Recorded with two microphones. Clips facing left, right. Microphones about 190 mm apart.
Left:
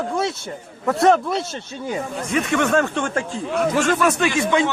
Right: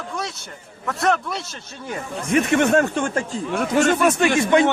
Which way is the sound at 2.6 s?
35° right (ahead or behind).